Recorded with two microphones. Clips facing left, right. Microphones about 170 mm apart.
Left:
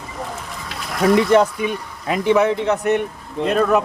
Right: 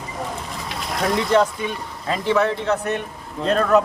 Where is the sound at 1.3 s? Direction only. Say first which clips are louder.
Left 3 dB; 15° left (ahead or behind).